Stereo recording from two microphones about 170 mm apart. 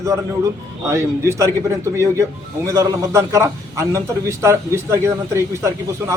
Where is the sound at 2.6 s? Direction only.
15° right (ahead or behind).